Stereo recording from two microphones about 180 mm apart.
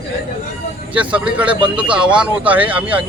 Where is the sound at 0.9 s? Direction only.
5° right (ahead or behind).